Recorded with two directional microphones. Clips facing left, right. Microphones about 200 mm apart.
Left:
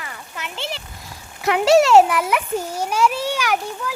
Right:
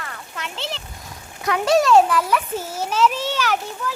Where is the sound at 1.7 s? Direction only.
25° left (ahead or behind).